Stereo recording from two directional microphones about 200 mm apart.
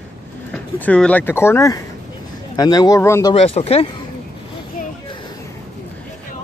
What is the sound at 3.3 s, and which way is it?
Speech, 30° left (ahead or behind).